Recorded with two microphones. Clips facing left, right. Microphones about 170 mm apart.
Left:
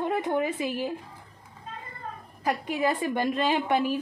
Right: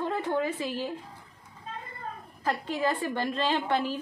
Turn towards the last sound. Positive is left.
turn(degrees=15)  # may be behind; listen again after turning